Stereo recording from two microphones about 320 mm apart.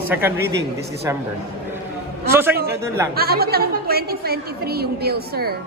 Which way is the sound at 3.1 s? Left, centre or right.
Right.